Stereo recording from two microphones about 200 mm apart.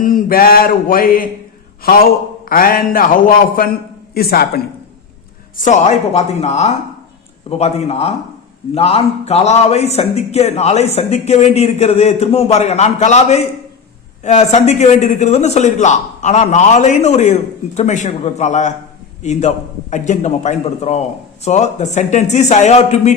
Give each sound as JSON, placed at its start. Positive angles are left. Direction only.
{"t": 0.0, "sound": "a man's voice", "side_deg": 45}
{"t": 5.6, "sound": "a man's voice", "side_deg": 35}